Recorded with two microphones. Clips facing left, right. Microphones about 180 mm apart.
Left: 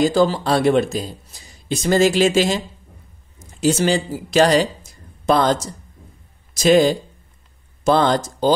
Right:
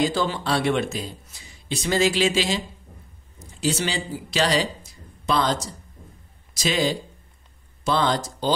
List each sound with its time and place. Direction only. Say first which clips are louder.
0.0 s speech: left 7 dB; 40° left (ahead or behind)
3.6 s speech: left 8 dB; 50° left (ahead or behind)